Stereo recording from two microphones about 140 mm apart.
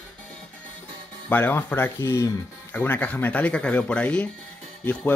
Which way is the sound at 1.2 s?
15° left (ahead or behind).